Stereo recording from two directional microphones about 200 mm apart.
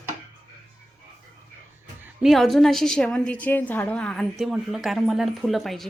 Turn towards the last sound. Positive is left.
turn(degrees=0)  # may be behind; listen again after turning